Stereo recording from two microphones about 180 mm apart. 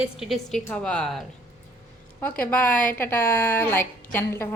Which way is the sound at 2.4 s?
10° left (ahead or behind).